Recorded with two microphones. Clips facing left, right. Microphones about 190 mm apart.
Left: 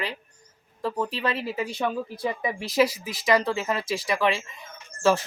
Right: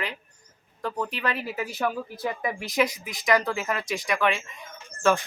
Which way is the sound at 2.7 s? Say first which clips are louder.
Left 4 dB; 30° left (ahead or behind).